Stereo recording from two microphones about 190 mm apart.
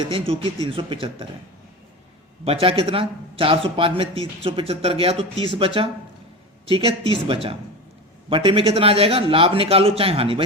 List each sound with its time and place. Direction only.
0.1 s a man's voice: 25° right (ahead or behind)
2.4 s a man's voice: 30° right (ahead or behind)